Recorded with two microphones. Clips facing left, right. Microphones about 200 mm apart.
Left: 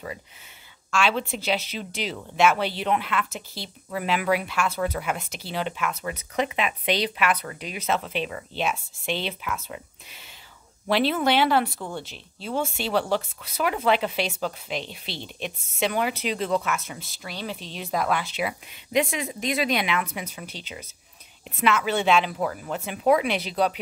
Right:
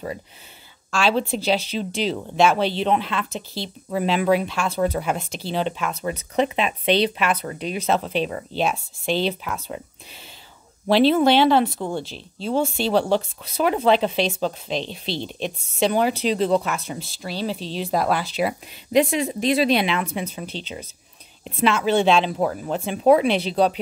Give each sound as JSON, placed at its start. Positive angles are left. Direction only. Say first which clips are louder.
{"t": 0.9, "sound": "speech", "louder": "right 4 dB", "side_deg": -35}
{"t": 10.9, "sound": "speech", "louder": "right 6 dB", "side_deg": -30}